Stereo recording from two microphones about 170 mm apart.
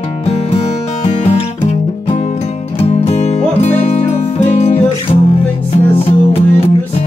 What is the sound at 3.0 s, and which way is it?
Music, 40° left (ahead or behind).